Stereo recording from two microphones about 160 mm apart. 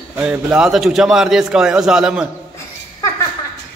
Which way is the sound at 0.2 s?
5° right (ahead or behind).